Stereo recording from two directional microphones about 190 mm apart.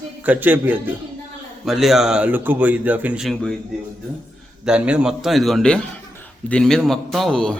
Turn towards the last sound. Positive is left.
turn(degrees=5)  # may be behind; listen again after turning